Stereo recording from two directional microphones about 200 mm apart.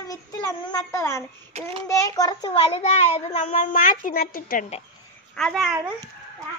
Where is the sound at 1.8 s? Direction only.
15° left (ahead or behind); by 4.6 s 45° left (ahead or behind).